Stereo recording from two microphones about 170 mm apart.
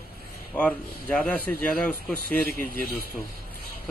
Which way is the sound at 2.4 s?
60° right (ahead or behind).